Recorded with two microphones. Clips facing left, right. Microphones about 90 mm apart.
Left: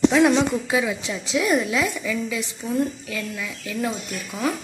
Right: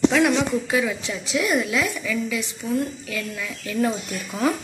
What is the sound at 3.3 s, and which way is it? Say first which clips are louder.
Speech: right 3 dB; 5° left (ahead or behind).